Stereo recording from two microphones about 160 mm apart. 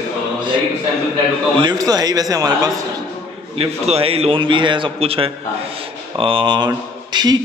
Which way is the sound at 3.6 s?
35° right (ahead or behind).